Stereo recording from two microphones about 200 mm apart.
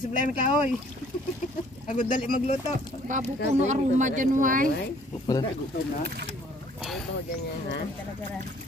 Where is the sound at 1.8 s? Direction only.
40° left (ahead or behind).